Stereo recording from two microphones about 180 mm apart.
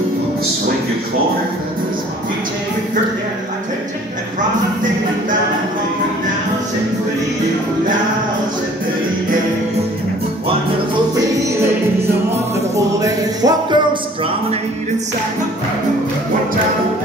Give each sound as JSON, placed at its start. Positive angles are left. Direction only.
{"t": 12.7, "sound": "music", "side_deg": -20}